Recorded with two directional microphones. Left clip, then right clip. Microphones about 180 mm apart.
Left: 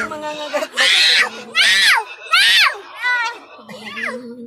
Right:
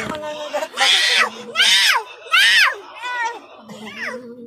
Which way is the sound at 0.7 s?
10° left (ahead or behind).